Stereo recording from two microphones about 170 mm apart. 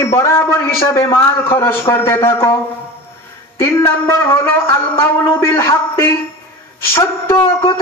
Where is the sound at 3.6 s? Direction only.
15° left (ahead or behind).